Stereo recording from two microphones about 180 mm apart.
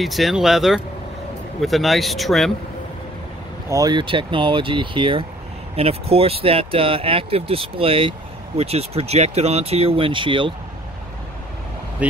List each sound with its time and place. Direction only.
0.0 s speech: centre (ahead or behind)
3.7 s speech: 20° right (ahead or behind)
12.0 s speech: 5° right (ahead or behind)